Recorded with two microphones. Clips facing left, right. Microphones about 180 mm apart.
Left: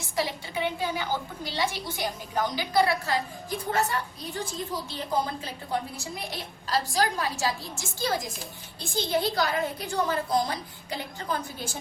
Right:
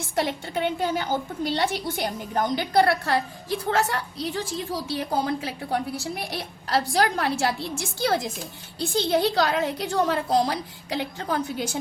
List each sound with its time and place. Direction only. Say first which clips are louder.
0.2 s a woman's voice: right 4 dB; 55° right (ahead or behind); by 11.8 s 70° right (ahead or behind)